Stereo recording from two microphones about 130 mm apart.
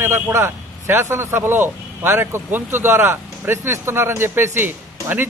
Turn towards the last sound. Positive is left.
turn(degrees=-15)  # may be behind; listen again after turning